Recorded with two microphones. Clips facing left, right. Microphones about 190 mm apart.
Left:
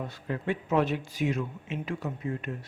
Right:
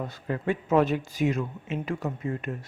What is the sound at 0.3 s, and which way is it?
Speech, 45° right (ahead or behind).